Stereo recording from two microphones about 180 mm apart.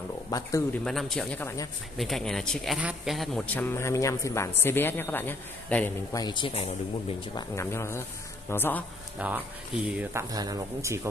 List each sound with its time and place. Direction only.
0.3 s speech: 20° left (ahead or behind)
0.8 s a man's voice: centre (ahead or behind)
6.1 s speech: 25° left (ahead or behind)
7.3 s a man's voice: 15° left (ahead or behind)
9.2 s speech: 5° right (ahead or behind)
9.9 s speech: 15° right (ahead or behind)